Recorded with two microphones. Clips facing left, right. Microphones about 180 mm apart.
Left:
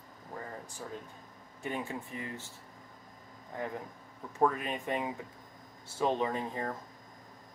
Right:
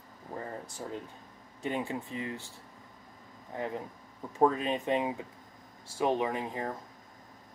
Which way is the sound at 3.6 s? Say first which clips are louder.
Right 2 dB; 20° right (ahead or behind).